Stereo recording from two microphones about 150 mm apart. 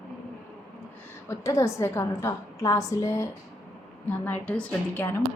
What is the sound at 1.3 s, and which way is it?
A woman's voice, 20° left (ahead or behind).